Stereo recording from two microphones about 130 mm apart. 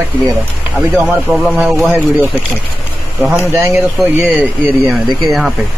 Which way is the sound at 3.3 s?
20° right (ahead or behind).